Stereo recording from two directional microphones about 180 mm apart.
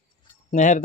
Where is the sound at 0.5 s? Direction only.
40° left (ahead or behind).